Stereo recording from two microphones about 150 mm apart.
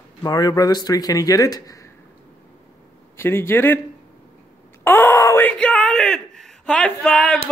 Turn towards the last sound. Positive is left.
turn(degrees=5)  # may be behind; listen again after turning